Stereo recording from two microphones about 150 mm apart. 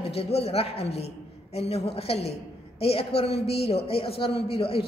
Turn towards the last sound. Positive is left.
turn(degrees=40)  # may be behind; listen again after turning